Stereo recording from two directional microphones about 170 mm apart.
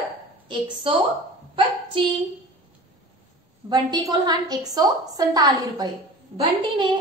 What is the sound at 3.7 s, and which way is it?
A woman's voice, 25° right (ahead or behind).